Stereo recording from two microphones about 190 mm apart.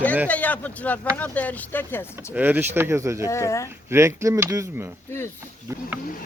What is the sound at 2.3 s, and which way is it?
Speech, 10° right (ahead or behind).